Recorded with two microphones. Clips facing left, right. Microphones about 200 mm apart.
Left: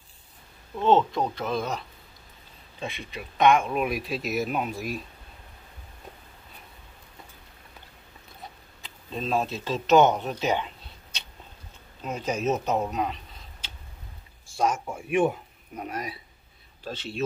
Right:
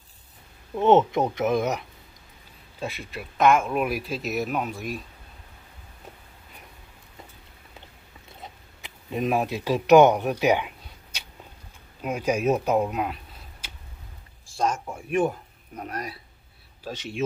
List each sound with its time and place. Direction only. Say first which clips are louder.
0.7 s speech: right 3 dB; 20° right (ahead or behind)
2.8 s speech: right 2 dB; 5° right (ahead or behind)
8.4 s a sound: right 1 dB; 20° right (ahead or behind)
12.0 s speech: right 4 dB; 10° right (ahead or behind)
14.6 s speech: even; 5° left (ahead or behind)
16.8 s speech: right 1 dB; 15° right (ahead or behind)